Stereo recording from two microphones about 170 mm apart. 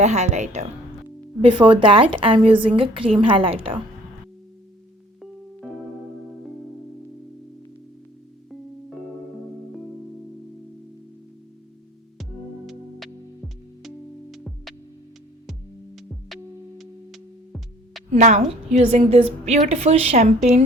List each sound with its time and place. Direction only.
0.0 s a woman's voice: 40° right (ahead or behind)
1.4 s a woman's voice: 30° right (ahead or behind)
13.8 s music: centre (ahead or behind)
16.0 s music: centre (ahead or behind)
18.1 s a woman's voice: 40° right (ahead or behind)